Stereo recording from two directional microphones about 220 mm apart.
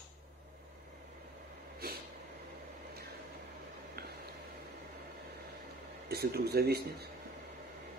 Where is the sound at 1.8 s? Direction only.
45° right (ahead or behind).